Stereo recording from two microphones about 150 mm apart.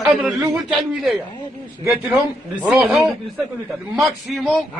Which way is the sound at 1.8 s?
20° right (ahead or behind).